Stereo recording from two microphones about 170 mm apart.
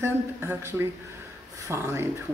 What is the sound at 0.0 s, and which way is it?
Speech, 15° right (ahead or behind).